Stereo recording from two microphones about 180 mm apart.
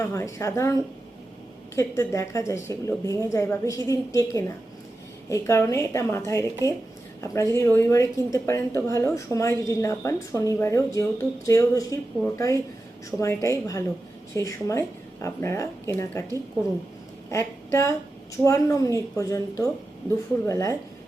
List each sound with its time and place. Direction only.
0.0 s a woman's voice: 15° left (ahead or behind)
17.3 s a woman's voice: 15° left (ahead or behind)